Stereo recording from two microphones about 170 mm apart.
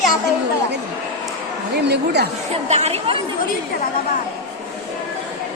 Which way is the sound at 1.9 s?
75° right (ahead or behind).